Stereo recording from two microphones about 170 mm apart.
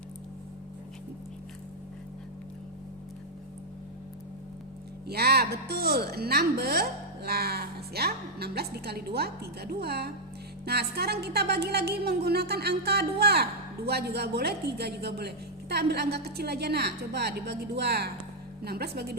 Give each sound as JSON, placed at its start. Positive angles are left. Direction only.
{"t": 5.0, "sound": "speech", "side_deg": -70}